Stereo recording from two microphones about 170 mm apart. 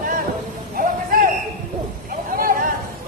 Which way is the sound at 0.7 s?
55° right (ahead or behind).